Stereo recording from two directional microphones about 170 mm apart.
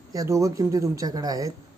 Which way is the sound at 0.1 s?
20° right (ahead or behind).